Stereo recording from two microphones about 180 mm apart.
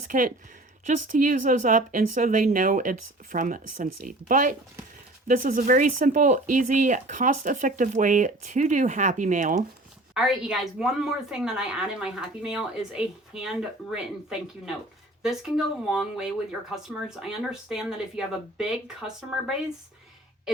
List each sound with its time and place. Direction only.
0.1 s speech: 45° right (ahead or behind)
10.2 s a woman's voice: 5° right (ahead or behind)